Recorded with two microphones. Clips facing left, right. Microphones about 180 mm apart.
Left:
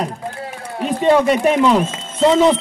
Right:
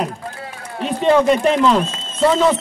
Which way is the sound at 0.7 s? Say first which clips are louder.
Left 1 dB; 5° left (ahead or behind).